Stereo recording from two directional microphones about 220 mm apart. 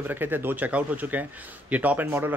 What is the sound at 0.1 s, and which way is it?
A man's voice, 10° right (ahead or behind).